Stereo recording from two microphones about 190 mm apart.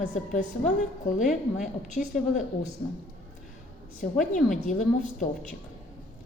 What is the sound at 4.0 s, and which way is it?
A woman's voice, 40° left (ahead or behind).